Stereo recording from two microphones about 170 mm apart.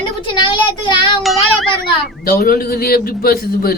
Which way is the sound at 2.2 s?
60° left (ahead or behind).